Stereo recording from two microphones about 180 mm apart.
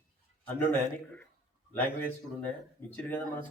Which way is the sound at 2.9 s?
10° left (ahead or behind).